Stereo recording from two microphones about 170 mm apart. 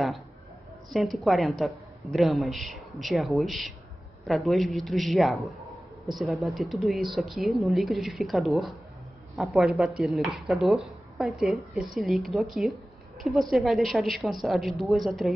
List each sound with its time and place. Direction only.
0.8 s speech: centre (ahead or behind)